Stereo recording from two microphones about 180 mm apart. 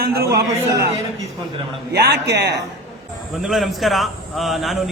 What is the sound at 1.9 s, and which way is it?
Speech, 65° right (ahead or behind).